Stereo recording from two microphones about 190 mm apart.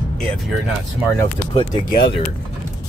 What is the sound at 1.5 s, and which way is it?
Speech, 30° left (ahead or behind).